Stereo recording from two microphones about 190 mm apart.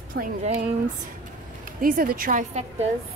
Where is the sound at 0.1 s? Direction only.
45° right (ahead or behind).